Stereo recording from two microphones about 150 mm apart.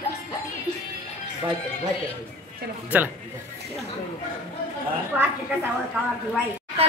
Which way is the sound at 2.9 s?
10° right (ahead or behind).